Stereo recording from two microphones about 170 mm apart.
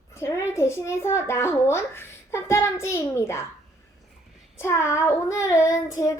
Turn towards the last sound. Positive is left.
turn(degrees=20)  # may be behind; listen again after turning